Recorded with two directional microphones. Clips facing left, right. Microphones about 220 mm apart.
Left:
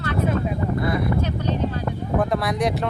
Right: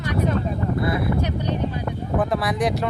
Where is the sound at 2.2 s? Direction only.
Centre (ahead or behind).